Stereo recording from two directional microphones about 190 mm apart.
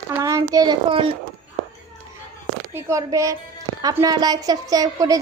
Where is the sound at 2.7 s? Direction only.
15° right (ahead or behind).